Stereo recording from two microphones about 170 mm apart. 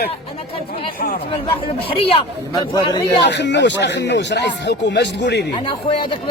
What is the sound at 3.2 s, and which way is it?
Speech, 90° left.